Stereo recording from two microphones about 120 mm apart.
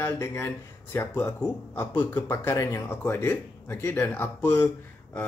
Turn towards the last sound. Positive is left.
turn(degrees=20)  # may be behind; listen again after turning